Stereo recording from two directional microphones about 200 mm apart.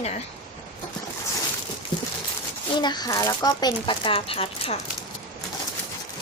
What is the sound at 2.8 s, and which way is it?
A woman's voice, 20° left (ahead or behind).